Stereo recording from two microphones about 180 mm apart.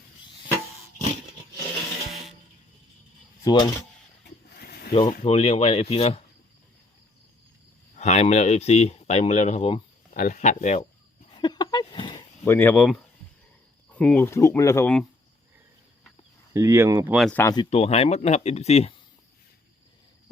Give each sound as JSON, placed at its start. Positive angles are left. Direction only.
{"t": 3.4, "sound": "speech", "side_deg": 20}
{"t": 4.5, "sound": "a sound", "side_deg": 60}
{"t": 4.9, "sound": "speech", "side_deg": 30}
{"t": 7.9, "sound": "speech", "side_deg": 40}
{"t": 10.1, "sound": "speech", "side_deg": 45}
{"t": 11.3, "sound": "a sound", "side_deg": 25}
{"t": 12.5, "sound": "speech", "side_deg": 10}
{"t": 16.6, "sound": "speech", "side_deg": -15}
{"t": 17.2, "sound": "speech", "side_deg": 5}
{"t": 17.4, "sound": "speech", "side_deg": 25}
{"t": 17.7, "sound": "speech", "side_deg": 35}